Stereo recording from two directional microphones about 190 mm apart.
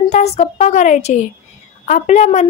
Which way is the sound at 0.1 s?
35° left (ahead or behind).